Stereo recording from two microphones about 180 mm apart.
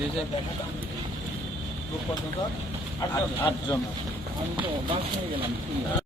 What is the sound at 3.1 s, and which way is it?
Speech, 20° left (ahead or behind).